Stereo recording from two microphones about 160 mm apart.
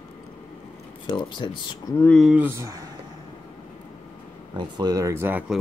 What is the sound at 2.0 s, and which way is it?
Speech, 5° left (ahead or behind).